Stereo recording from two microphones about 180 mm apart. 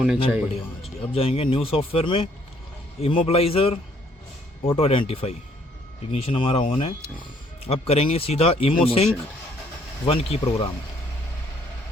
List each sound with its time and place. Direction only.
0.0 s a man's voice: 5° right (ahead or behind)
0.8 s speech: 30° left (ahead or behind)
10.1 s speech: 30° left (ahead or behind)